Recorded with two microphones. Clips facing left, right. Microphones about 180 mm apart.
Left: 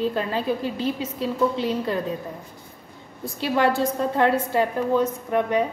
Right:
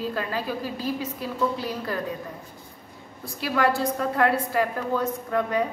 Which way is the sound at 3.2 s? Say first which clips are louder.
Left 3 dB; 25° left (ahead or behind).